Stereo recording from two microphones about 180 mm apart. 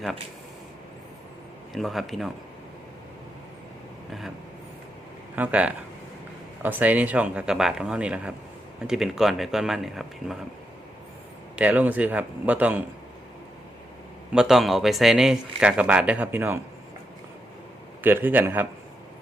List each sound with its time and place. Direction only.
1.7 s speech: centre (ahead or behind)
5.4 s speech: 5° right (ahead or behind)
11.5 s speech: 10° right (ahead or behind)
14.3 s speech: centre (ahead or behind)
18.0 s speech: 10° right (ahead or behind)